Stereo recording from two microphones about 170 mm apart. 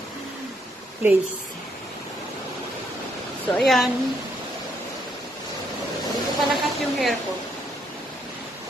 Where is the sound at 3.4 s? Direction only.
Centre (ahead or behind).